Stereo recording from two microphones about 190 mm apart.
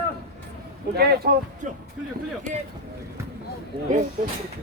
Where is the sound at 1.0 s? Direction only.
55° right (ahead or behind).